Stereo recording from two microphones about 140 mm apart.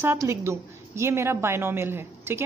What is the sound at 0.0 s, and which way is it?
A woman's voice, 20° right (ahead or behind).